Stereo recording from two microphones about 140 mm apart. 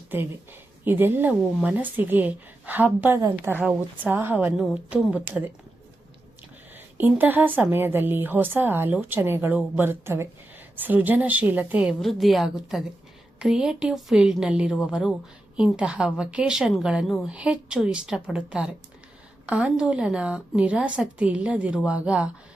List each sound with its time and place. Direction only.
0.9 s a woman's voice: 15° right (ahead or behind)
3.2 s a woman's voice: 25° right (ahead or behind)
3.5 s a woman's voice: 10° right (ahead or behind)
6.7 s a woman's voice: 10° right (ahead or behind)